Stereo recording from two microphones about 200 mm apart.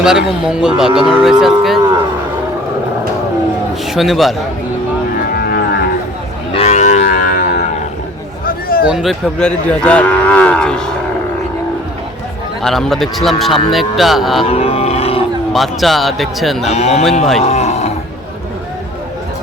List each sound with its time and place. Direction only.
0.0 s cattle: 5° right (ahead or behind)
3.9 s cattle: centre (ahead or behind)
5.1 s cattle: 50° left (ahead or behind)
6.5 s moo: 30° left (ahead or behind)
8.4 s a sound: 45° left (ahead or behind)
8.9 s cattle: centre (ahead or behind)
12.6 s cattle: centre (ahead or behind)
14.4 s music: 30° left (ahead or behind)
15.5 s cattle: centre (ahead or behind)
16.6 s speech: 35° left (ahead or behind)
17.4 s livestock: 35° left (ahead or behind)